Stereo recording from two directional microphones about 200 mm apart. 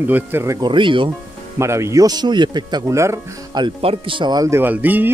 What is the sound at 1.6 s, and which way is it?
Speech, 15° right (ahead or behind).